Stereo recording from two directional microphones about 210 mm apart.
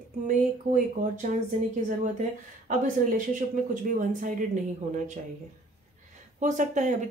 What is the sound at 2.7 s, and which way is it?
Speech, 35° right (ahead or behind).